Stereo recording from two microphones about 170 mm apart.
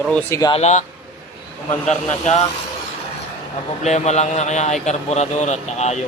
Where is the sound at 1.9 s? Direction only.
45° left (ahead or behind).